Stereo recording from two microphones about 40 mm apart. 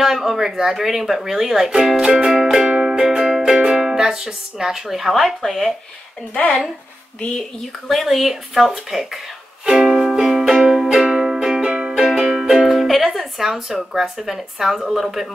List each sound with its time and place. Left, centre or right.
0.0 s speech: centre
2.6 s music: centre
3.6 s speech: centre
6.3 s speech: left
7.9 s speech: centre
9.7 s speech: centre
10.1 s music: centre
11.0 s music: centre